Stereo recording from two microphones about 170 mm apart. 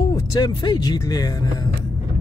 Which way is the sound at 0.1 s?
25° left (ahead or behind).